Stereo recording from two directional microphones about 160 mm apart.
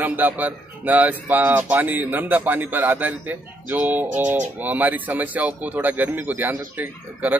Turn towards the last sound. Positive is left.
turn(degrees=-10)  # may be behind; listen again after turning